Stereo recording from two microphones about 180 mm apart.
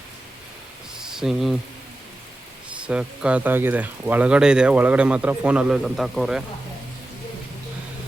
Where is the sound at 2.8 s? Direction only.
5° right (ahead or behind).